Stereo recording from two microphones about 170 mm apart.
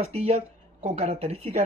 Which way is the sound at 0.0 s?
35° right (ahead or behind).